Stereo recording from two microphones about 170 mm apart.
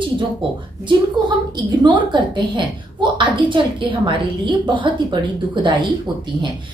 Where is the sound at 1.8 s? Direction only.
25° right (ahead or behind).